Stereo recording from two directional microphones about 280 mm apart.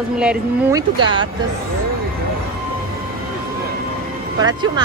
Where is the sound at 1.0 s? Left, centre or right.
Centre.